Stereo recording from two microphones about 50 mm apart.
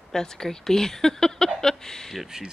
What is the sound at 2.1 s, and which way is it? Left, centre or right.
Speech, centre.